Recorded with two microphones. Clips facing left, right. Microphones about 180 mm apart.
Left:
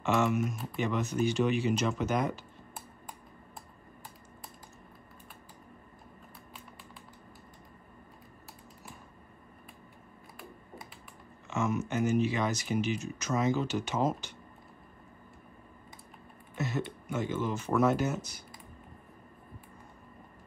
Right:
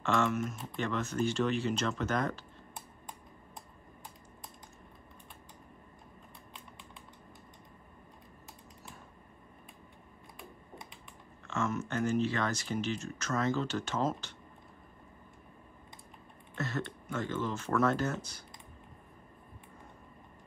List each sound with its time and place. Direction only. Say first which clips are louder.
0.0 s speech: left 2 dB; 5° left (ahead or behind)
0.9 s speech: left 2 dB; 15° left (ahead or behind)
11.4 s speech: left 3 dB; 15° left (ahead or behind)
16.5 s speech: left 3 dB; 15° left (ahead or behind)